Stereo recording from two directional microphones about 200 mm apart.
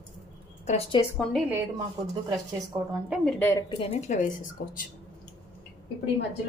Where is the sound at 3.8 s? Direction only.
35° left (ahead or behind).